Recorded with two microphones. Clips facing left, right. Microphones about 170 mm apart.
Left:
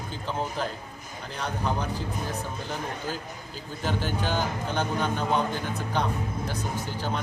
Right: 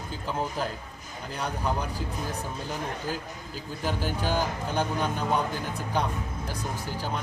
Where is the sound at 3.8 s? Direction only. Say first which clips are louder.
Left 1 dB; 10° right (ahead or behind).